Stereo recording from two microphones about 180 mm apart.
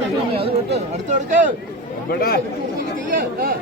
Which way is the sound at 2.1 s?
55° left (ahead or behind).